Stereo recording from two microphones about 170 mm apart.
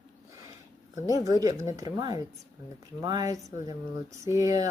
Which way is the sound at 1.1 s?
20° right (ahead or behind).